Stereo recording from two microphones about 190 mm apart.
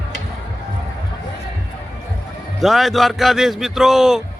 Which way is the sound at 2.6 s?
Centre (ahead or behind).